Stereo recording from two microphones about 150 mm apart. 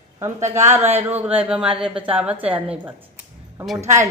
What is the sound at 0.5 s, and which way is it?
A woman's voice, 15° right (ahead or behind).